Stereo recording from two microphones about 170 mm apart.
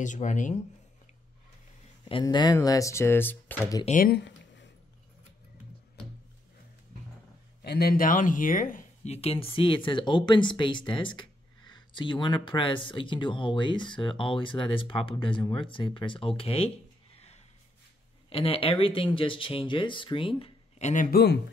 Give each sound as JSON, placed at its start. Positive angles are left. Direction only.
{"t": 0.0, "sound": "speech", "side_deg": 45}
{"t": 2.2, "sound": "speech", "side_deg": 20}
{"t": 3.8, "sound": "speech", "side_deg": 50}
{"t": 4.1, "sound": "a sound", "side_deg": 90}
{"t": 7.6, "sound": "speech", "side_deg": 70}
{"t": 9.1, "sound": "speech", "side_deg": 35}
{"t": 18.3, "sound": "speech", "side_deg": 35}
{"t": 20.9, "sound": "a man's voice", "side_deg": 60}